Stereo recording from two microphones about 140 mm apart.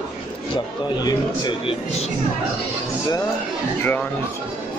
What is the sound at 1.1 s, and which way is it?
Speech, 30° left (ahead or behind).